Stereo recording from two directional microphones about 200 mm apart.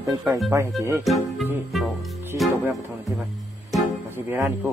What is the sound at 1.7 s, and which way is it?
Music, centre (ahead or behind).